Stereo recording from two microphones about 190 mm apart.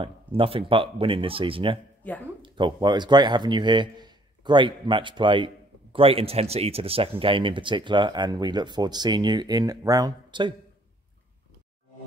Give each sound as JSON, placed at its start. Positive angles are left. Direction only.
{"t": 0.0, "sound": "speech", "side_deg": -30}